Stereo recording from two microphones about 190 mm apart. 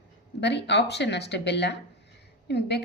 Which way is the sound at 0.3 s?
65° left (ahead or behind).